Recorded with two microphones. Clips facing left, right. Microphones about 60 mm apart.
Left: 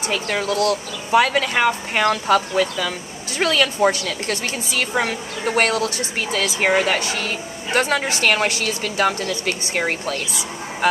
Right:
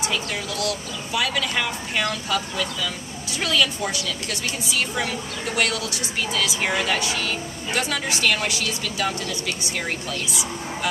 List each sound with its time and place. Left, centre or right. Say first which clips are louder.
0.1 s a woman's voice: left 6 dB; left